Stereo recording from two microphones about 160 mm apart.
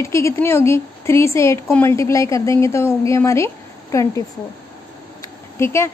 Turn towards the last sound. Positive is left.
turn(degrees=15)  # may be behind; listen again after turning